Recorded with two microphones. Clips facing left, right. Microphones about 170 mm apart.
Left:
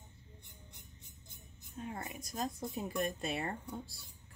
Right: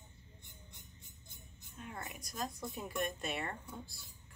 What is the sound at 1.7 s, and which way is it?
Speech, 30° left (ahead or behind).